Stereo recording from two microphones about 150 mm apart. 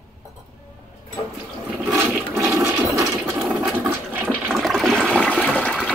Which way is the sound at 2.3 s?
20° right (ahead or behind).